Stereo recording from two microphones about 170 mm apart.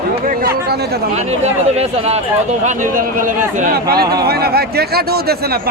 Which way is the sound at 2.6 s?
55° right (ahead or behind).